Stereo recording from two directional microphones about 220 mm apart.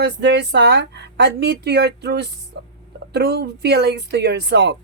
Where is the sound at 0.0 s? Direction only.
50° right (ahead or behind).